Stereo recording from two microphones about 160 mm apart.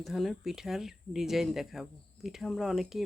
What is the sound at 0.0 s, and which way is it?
Speech, centre (ahead or behind).